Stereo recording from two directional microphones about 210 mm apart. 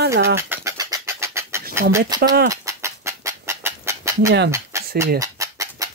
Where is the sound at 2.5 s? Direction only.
15° right (ahead or behind).